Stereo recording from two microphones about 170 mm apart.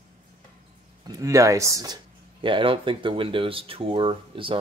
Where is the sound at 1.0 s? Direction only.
20° right (ahead or behind).